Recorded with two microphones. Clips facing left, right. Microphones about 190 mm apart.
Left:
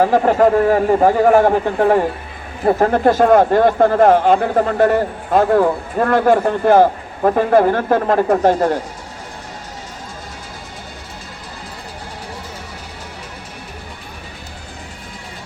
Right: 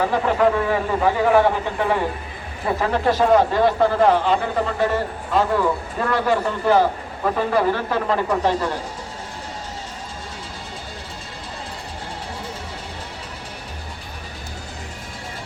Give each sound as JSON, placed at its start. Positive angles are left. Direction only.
{"t": 0.0, "sound": "speech", "side_deg": 45}